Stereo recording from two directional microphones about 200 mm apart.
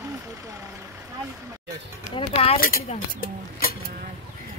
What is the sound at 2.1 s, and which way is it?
Speech, 30° left (ahead or behind).